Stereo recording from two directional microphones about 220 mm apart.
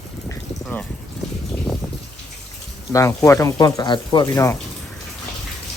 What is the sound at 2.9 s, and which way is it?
Speech, 15° left (ahead or behind).